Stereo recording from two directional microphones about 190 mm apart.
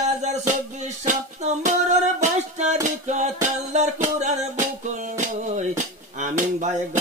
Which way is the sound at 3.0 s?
35° right (ahead or behind).